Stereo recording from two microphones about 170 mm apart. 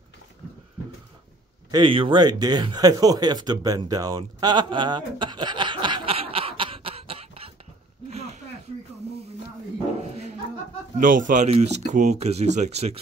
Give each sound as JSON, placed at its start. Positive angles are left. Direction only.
{"t": 1.7, "sound": "speech", "side_deg": -30}
{"t": 8.1, "sound": "a sound", "side_deg": -40}
{"t": 11.0, "sound": "speech", "side_deg": -50}